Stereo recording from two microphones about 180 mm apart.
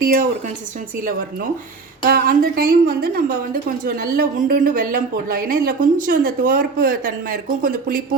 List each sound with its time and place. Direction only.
0.0 s a woman's voice: 50° right (ahead or behind)
2.0 s a woman's voice: 55° right (ahead or behind)